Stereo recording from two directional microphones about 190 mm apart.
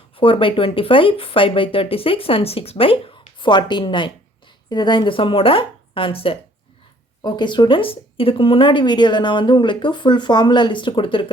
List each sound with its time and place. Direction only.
0.2 s speech: 25° left (ahead or behind)